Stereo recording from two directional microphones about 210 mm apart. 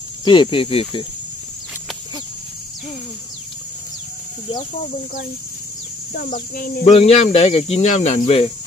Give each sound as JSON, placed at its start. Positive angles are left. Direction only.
{"t": 0.2, "sound": "speech", "side_deg": 20}
{"t": 6.1, "sound": "speech", "side_deg": 45}